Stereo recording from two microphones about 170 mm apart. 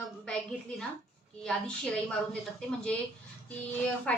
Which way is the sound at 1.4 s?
5° left (ahead or behind).